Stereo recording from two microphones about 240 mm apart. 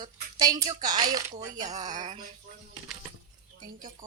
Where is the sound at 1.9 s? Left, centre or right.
Right.